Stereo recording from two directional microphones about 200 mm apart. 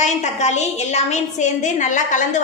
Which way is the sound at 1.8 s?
40° left (ahead or behind).